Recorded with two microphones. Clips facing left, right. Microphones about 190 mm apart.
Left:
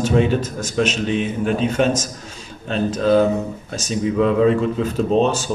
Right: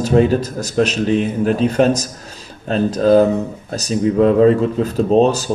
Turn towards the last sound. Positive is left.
turn(degrees=-40)  # may be behind; listen again after turning